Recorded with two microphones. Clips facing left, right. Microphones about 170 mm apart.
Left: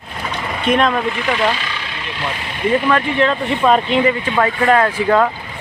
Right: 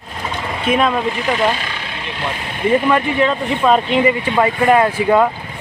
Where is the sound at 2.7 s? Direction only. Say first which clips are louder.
Right 1 dB; 10° right (ahead or behind).